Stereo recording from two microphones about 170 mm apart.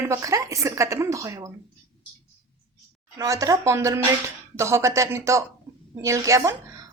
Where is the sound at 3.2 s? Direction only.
20° right (ahead or behind).